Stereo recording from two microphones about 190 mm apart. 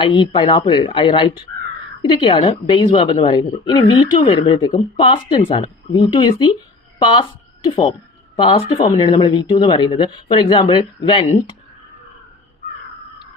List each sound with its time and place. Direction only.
0.0 s a woman's voice: 25° left (ahead or behind)
8.4 s a woman's voice: 25° left (ahead or behind)